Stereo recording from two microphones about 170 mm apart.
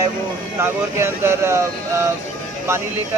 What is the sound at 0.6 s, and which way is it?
Speech, 15° right (ahead or behind).